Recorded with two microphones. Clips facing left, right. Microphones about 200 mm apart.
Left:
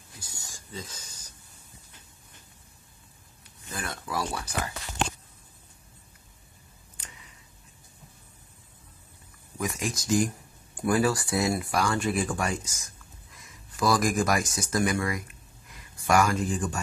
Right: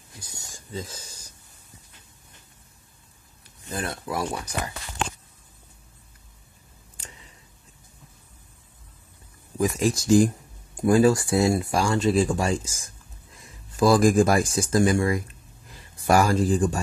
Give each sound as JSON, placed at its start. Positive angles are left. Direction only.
{"t": 0.2, "sound": "speech", "side_deg": -20}
{"t": 3.6, "sound": "speech", "side_deg": -30}
{"t": 7.0, "sound": "tick", "side_deg": -30}
{"t": 9.6, "sound": "speech", "side_deg": -35}